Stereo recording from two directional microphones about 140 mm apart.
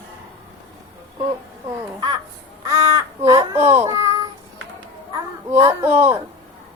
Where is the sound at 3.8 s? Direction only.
25° right (ahead or behind).